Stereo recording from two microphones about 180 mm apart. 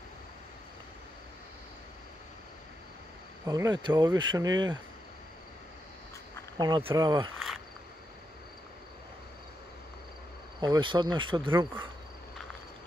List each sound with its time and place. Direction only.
3.4 s speech: 20° right (ahead or behind)
6.6 s speech: 25° right (ahead or behind)
10.6 s speech: 25° right (ahead or behind)